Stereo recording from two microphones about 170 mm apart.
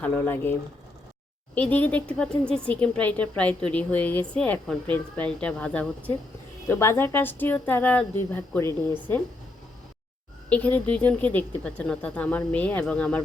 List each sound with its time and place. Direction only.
0.0 s a woman's voice: 10° left (ahead or behind)
1.7 s a woman's voice: 10° left (ahead or behind)
10.5 s a woman's voice: 10° left (ahead or behind)